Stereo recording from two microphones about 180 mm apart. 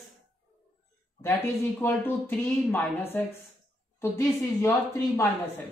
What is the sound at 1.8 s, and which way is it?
A woman's voice, 10° left (ahead or behind).